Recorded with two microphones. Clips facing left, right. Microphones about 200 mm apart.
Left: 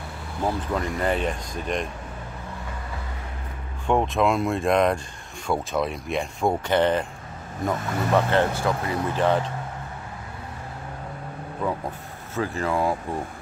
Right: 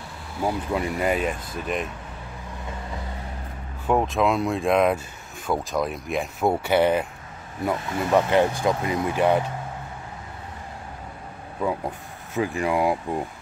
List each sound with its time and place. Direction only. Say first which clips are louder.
0.4 s speech: right 1 dB; 10° right (ahead or behind)
3.8 s speech: even; 5° right (ahead or behind)
11.6 s speech: right 2 dB; 15° right (ahead or behind)